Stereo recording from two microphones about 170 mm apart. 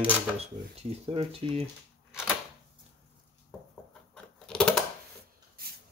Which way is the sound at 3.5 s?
5° left (ahead or behind).